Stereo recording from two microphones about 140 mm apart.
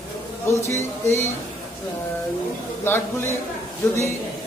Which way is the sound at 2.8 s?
15° left (ahead or behind).